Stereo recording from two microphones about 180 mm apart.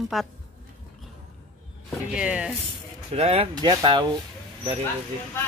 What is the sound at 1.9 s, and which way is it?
Speech, 5° right (ahead or behind).